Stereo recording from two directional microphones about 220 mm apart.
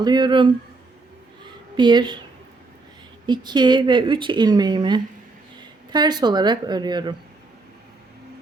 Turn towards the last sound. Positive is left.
turn(degrees=-20)  # may be behind; listen again after turning